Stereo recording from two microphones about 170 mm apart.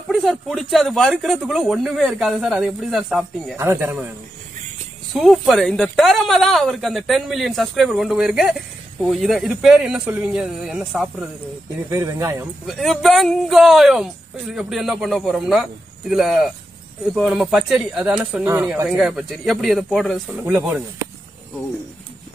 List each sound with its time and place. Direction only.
0.1 s speech: centre (ahead or behind)
3.5 s speech: 15° right (ahead or behind)
5.1 s speech: centre (ahead or behind)
11.9 s speech: 20° right (ahead or behind)
12.6 s speech: centre (ahead or behind)
18.9 s speech: 5° right (ahead or behind)
20.4 s speech: 10° right (ahead or behind)